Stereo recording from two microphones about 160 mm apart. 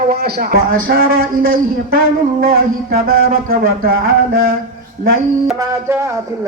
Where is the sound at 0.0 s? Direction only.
70° right (ahead or behind).